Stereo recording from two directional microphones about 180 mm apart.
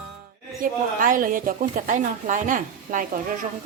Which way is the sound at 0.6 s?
50° right (ahead or behind).